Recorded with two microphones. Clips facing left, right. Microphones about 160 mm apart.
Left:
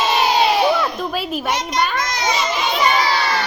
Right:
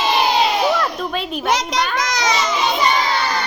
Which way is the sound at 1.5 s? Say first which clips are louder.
Right 2 dB; 90° right.